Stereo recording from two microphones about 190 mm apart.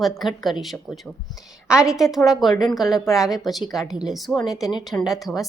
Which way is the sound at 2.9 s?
15° left (ahead or behind).